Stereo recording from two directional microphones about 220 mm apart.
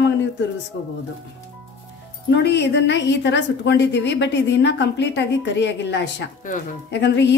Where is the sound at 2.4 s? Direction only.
50° left (ahead or behind).